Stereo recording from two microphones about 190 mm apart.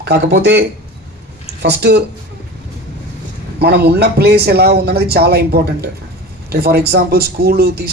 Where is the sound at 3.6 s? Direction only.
60° right (ahead or behind).